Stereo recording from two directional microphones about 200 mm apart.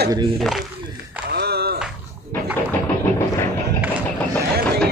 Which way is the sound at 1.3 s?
55° right (ahead or behind).